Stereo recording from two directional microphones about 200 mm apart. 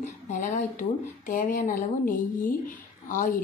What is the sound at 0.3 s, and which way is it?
A woman's voice, 40° left (ahead or behind).